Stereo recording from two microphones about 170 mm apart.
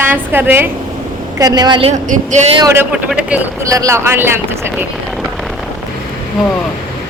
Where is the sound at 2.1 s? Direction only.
45° right (ahead or behind).